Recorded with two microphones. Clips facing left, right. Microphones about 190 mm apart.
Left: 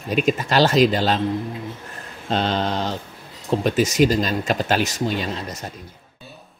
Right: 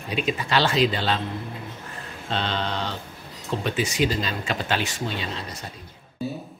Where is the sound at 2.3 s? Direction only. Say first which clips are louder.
Left 6 dB; 40° left (ahead or behind).